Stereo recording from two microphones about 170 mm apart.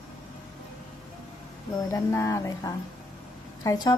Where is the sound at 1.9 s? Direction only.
15° left (ahead or behind).